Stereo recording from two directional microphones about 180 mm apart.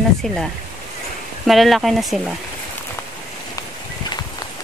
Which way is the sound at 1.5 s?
Centre (ahead or behind).